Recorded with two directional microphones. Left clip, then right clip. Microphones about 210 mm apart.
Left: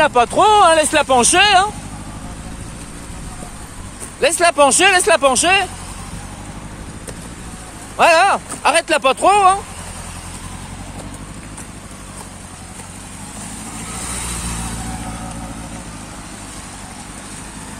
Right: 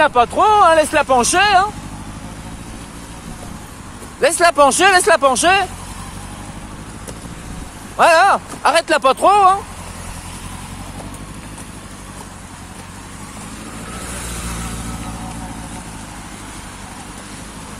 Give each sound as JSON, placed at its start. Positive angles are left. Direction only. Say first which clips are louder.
{"t": 0.0, "sound": "speech", "louder": "even", "side_deg": 20}
{"t": 4.2, "sound": "speech", "louder": "right 1 dB", "side_deg": -5}
{"t": 8.0, "sound": "speech", "louder": "right 1 dB", "side_deg": -10}